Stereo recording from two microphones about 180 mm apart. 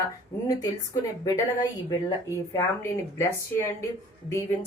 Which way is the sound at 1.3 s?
20° left (ahead or behind).